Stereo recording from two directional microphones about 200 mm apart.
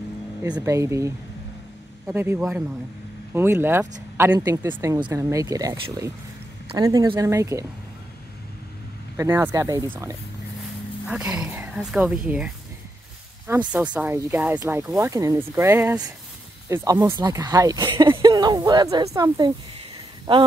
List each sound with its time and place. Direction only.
0.4 s speech: 10° right (ahead or behind)
4.4 s speech: 20° right (ahead or behind)
9.1 s speech: 15° right (ahead or behind)
13.7 s speech: 5° right (ahead or behind)